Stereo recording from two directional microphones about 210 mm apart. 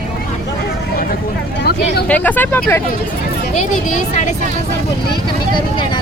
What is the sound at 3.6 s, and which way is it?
Speech, 35° left (ahead or behind).